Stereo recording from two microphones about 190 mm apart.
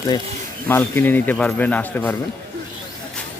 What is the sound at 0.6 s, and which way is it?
Speech, 10° left (ahead or behind).